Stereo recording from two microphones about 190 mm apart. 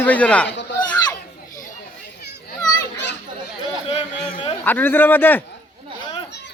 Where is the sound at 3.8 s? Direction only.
35° left (ahead or behind).